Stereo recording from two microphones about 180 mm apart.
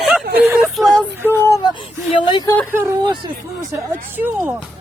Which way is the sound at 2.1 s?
25° left (ahead or behind).